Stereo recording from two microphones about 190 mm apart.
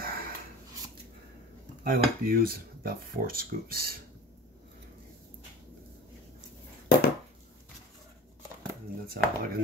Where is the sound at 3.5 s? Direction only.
50° right (ahead or behind).